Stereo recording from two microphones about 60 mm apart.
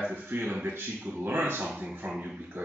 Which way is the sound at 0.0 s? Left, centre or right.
Right.